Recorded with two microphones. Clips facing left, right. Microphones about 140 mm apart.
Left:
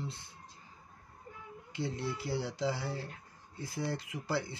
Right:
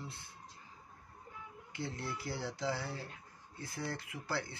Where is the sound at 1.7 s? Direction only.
25° left (ahead or behind).